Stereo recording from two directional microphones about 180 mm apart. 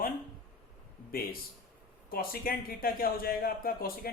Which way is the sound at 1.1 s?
55° left (ahead or behind).